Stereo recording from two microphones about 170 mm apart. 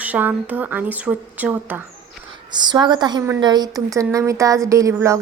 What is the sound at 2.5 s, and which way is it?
A woman's voice, 25° right (ahead or behind).